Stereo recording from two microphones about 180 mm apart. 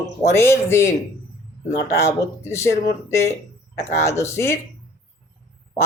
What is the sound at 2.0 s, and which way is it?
Speech, 15° left (ahead or behind).